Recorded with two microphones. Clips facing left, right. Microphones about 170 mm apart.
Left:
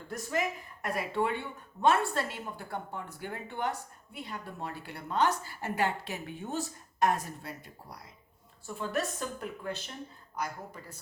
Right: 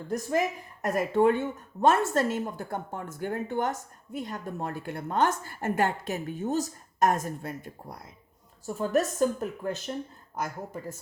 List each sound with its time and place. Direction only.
0.1 s speech: 40° right (ahead or behind)